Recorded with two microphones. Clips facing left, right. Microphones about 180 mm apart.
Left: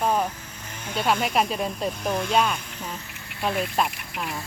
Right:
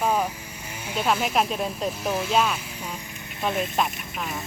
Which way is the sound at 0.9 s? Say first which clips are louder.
Even; 5° right (ahead or behind).